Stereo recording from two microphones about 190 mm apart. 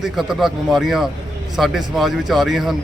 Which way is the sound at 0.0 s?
Centre (ahead or behind).